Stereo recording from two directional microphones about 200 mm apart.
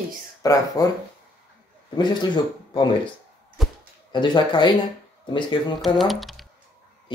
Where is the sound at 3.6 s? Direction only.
Centre (ahead or behind).